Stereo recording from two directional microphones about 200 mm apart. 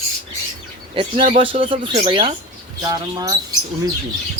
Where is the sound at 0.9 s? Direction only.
25° right (ahead or behind).